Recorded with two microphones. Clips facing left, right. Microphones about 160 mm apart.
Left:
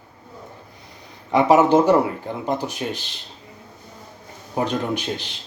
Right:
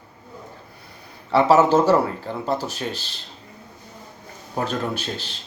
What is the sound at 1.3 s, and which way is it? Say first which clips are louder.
Speech: left 1 dB; 15° left (ahead or behind).